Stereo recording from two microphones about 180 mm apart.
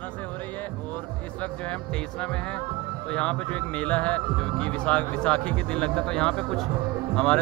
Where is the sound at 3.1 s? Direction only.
5° left (ahead or behind).